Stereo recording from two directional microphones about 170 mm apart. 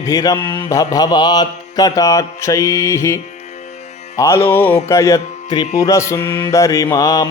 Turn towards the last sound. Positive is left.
turn(degrees=20)  # may be behind; listen again after turning